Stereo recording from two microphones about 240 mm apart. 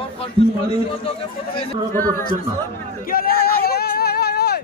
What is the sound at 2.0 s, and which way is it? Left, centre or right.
Speech, centre.